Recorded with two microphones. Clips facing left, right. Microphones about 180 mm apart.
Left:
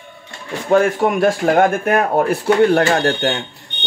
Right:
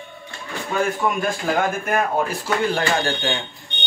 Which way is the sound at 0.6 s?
75° left (ahead or behind).